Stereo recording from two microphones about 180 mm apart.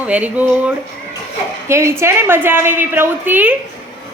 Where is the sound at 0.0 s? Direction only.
10° right (ahead or behind).